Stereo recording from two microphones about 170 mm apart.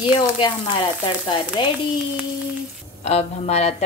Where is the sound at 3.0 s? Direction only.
40° left (ahead or behind).